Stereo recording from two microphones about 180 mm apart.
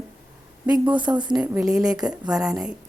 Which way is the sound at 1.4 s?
5° right (ahead or behind).